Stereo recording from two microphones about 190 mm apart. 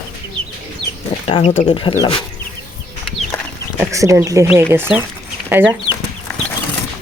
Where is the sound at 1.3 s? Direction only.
30° left (ahead or behind).